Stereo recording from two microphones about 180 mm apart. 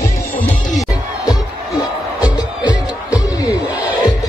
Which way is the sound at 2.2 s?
20° left (ahead or behind).